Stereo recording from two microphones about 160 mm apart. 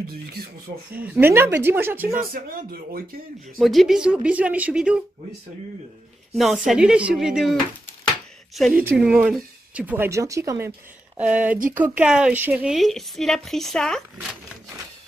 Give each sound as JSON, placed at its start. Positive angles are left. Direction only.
{"t": 0.1, "sound": "speech", "side_deg": -75}
{"t": 0.9, "sound": "speech", "side_deg": -10}
{"t": 2.1, "sound": "speech", "side_deg": -60}
{"t": 3.5, "sound": "speech", "side_deg": 0}
{"t": 6.3, "sound": "a woman's voice", "side_deg": 0}
{"t": 8.7, "sound": "speech", "side_deg": -10}
{"t": 11.1, "sound": "a woman's voice", "side_deg": -10}